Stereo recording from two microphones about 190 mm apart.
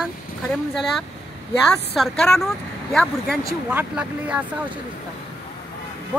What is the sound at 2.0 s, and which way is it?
Speech, 5° left (ahead or behind).